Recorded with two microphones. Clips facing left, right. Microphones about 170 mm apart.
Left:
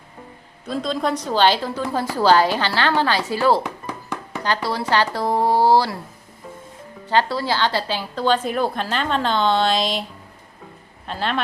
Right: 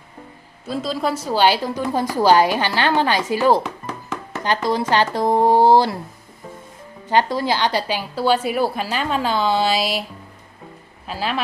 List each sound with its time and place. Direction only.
0.7 s a woman's voice: 5° right (ahead or behind)
3.8 s music: 10° left (ahead or behind)
4.4 s speech: 20° right (ahead or behind)
7.1 s a woman's voice: 15° right (ahead or behind)